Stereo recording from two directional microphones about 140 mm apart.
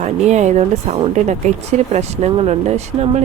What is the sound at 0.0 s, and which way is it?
Speech, 55° right (ahead or behind).